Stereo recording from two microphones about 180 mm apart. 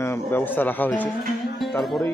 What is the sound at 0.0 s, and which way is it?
Speech, 15° left (ahead or behind).